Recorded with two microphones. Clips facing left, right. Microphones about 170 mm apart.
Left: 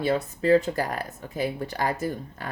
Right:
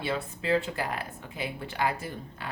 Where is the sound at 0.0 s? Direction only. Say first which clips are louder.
Left 7 dB; 40° left (ahead or behind).